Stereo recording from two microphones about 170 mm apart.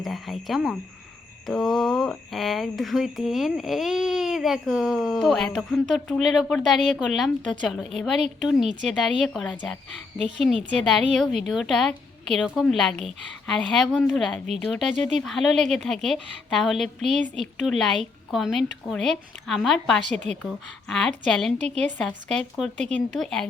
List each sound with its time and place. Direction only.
0.0 s speech: centre (ahead or behind)
10.9 s speech: centre (ahead or behind)
14.9 s a woman's voice: 45° right (ahead or behind)
15.2 s speech: centre (ahead or behind)
20.1 s a woman's voice: 45° right (ahead or behind)
20.4 s speech: 5° left (ahead or behind)